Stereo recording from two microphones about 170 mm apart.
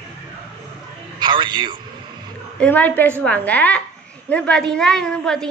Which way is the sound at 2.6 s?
10° left (ahead or behind).